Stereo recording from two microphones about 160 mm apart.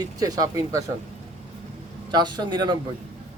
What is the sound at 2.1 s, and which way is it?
Speech, 25° right (ahead or behind).